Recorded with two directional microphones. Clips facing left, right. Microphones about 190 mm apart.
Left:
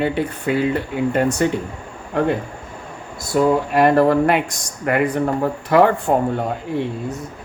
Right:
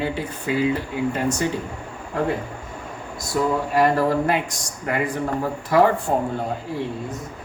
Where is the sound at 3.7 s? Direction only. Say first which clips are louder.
Left 3 dB; 60° left (ahead or behind).